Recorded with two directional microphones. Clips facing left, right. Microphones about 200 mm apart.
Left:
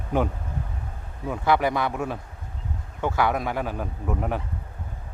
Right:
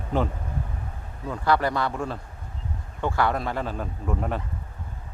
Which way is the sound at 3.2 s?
15° left (ahead or behind).